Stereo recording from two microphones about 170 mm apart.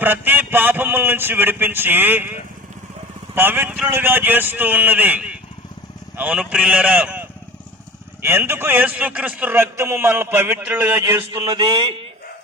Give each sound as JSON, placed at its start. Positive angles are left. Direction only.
{"t": 0.0, "sound": "a man's voice", "side_deg": -10}
{"t": 11.3, "sound": "speech", "side_deg": -30}